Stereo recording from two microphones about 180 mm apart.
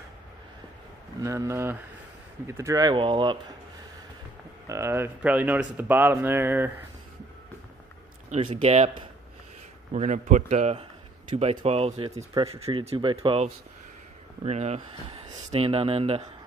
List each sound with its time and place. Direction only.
1.2 s speech: 15° right (ahead or behind)
4.6 s speech: 15° right (ahead or behind)
8.5 s speech: 35° right (ahead or behind)
9.9 s a man's voice: 40° right (ahead or behind)